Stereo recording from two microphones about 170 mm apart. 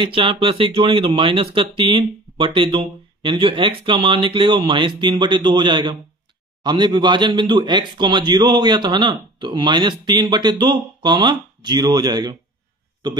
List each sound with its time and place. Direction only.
0.0 s speech: 30° right (ahead or behind)